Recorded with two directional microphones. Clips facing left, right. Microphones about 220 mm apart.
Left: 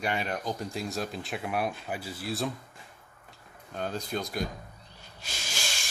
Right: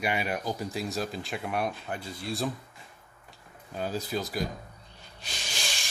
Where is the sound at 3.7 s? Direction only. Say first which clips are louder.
Right 1 dB; 5° right (ahead or behind).